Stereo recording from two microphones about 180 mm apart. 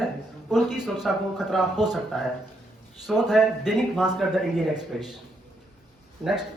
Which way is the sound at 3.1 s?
5° right (ahead or behind).